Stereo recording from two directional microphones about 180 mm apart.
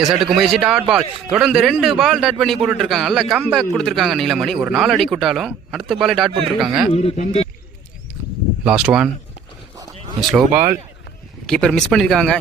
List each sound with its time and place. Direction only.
0.0 s a man's voice: centre (ahead or behind)
6.9 s speech: 35° left (ahead or behind)
8.6 s a man's voice: 5° right (ahead or behind)
10.2 s a man's voice: 5° right (ahead or behind)